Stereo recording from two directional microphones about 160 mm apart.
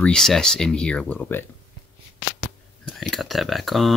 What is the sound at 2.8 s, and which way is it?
Speech, centre (ahead or behind).